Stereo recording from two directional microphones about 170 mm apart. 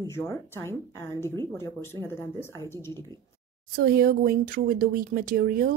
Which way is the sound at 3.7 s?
60° right (ahead or behind).